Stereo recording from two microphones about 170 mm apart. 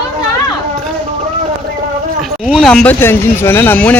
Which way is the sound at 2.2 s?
Centre (ahead or behind).